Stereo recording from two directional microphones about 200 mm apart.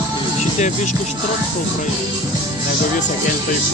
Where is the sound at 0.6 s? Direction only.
35° left (ahead or behind).